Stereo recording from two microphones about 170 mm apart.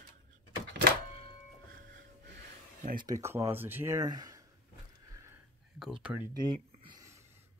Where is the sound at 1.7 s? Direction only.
70° right (ahead or behind); by 2.4 s 85° right.